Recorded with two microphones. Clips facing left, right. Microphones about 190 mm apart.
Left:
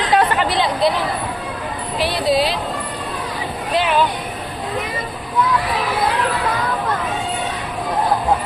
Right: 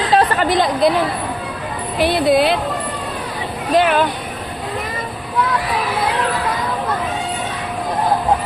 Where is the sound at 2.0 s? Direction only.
55° right (ahead or behind).